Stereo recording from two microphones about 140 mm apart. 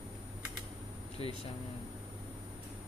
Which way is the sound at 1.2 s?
40° left (ahead or behind).